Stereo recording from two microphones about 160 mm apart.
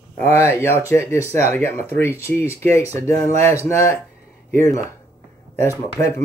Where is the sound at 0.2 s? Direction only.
15° left (ahead or behind).